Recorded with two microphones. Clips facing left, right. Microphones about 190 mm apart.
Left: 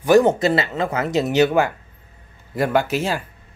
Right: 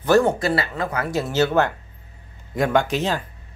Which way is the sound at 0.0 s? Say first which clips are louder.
Left 3 dB; 15° left (ahead or behind).